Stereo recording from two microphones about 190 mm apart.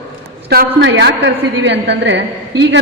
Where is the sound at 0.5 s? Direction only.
60° right (ahead or behind).